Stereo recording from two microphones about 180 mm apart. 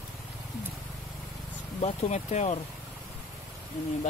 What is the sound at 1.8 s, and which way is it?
Speech, 35° left (ahead or behind).